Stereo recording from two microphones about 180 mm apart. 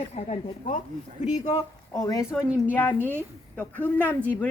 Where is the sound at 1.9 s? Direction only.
20° left (ahead or behind).